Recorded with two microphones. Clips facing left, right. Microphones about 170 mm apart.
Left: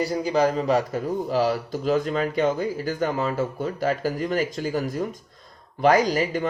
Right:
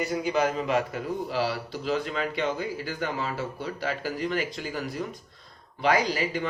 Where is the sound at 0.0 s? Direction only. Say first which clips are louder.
Left 4 dB; 35° left (ahead or behind).